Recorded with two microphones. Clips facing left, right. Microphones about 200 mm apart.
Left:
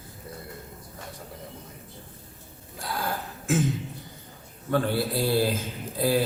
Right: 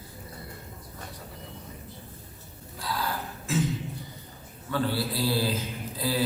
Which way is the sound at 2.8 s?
50° left (ahead or behind).